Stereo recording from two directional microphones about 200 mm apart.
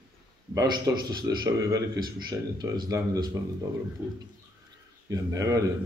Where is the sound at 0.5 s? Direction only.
20° right (ahead or behind).